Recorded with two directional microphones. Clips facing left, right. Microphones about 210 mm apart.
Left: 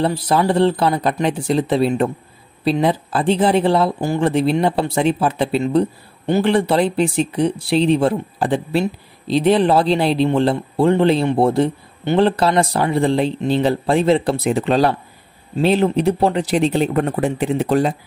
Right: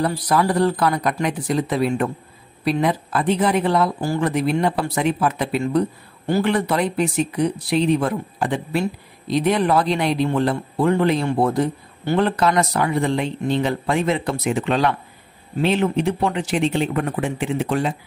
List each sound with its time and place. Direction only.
0.0 s speech: 25° left (ahead or behind)